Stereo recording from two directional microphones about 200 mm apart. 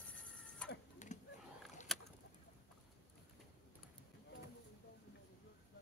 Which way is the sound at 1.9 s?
Centre (ahead or behind).